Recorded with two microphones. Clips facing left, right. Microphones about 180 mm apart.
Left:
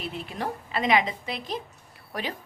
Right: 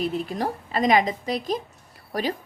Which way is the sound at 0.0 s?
40° right (ahead or behind).